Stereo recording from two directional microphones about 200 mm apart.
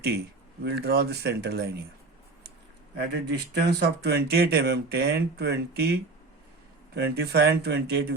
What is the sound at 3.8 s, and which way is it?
Speech, 55° right (ahead or behind).